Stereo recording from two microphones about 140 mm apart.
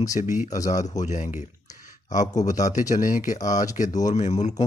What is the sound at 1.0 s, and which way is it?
Speech, 60° left (ahead or behind).